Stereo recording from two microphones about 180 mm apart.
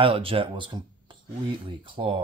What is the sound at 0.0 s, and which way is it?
Speech, 30° right (ahead or behind).